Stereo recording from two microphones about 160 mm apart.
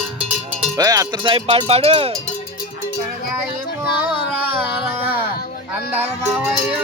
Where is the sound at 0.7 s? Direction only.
20° right (ahead or behind); by 2.1 s 40° right (ahead or behind).